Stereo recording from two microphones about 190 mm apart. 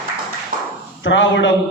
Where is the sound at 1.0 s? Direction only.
80° left.